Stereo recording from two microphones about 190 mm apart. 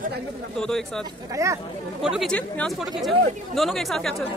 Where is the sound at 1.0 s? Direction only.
15° right (ahead or behind).